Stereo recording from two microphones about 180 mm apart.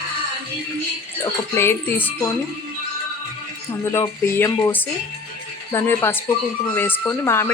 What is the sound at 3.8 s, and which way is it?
A woman's voice, 15° left (ahead or behind).